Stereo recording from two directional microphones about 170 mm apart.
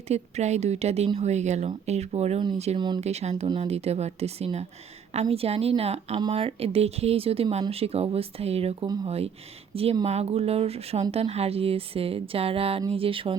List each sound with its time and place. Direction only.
0.1 s speech: 40° right (ahead or behind)
2.7 s speech: 25° right (ahead or behind)
3.0 s speech: 40° right (ahead or behind)